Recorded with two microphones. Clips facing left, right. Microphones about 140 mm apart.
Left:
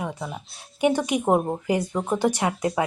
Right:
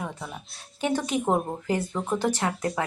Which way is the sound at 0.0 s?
15° left (ahead or behind).